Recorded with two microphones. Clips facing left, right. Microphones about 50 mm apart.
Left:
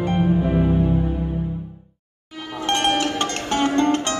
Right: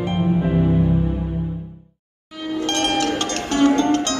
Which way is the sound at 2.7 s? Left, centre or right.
Left.